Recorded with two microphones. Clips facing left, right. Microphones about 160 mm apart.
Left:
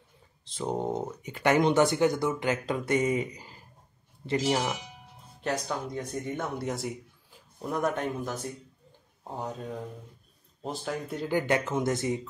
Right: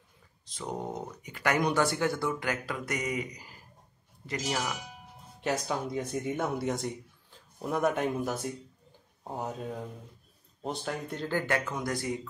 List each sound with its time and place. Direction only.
0.6 s speech: 25° left (ahead or behind)
5.4 s speech: 5° right (ahead or behind)
11.2 s speech: 20° left (ahead or behind)